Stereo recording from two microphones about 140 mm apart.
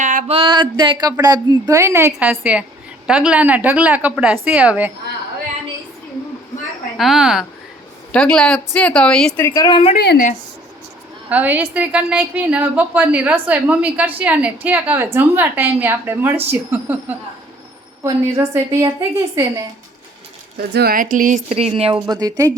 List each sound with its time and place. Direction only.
0.0 s music: 75° right (ahead or behind)
0.3 s a sound: 35° right (ahead or behind)
1.6 s a woman's voice: 20° right (ahead or behind)
6.9 s a woman's voice: centre (ahead or behind)
8.1 s speech: 5° left (ahead or behind)
9.4 s a woman's voice: 25° left (ahead or behind)
9.9 s a woman's voice: 80° left
11.3 s a woman's voice: 10° right (ahead or behind)
18.0 s a woman's voice: 20° right (ahead or behind)
20.6 s a woman's voice: 90° right; by 21.3 s 75° right (ahead or behind)
21.5 s a woman's voice: 45° right (ahead or behind)
22.0 s a woman's voice: 30° right (ahead or behind)